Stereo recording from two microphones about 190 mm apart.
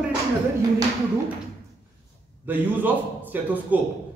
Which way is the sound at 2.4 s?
10° right (ahead or behind).